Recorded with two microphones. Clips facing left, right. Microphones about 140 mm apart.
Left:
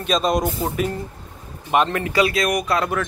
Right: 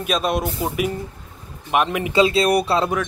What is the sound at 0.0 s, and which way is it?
Speech, 5° right (ahead or behind).